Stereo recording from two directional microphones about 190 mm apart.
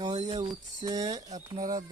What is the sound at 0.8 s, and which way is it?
Speech, 20° right (ahead or behind).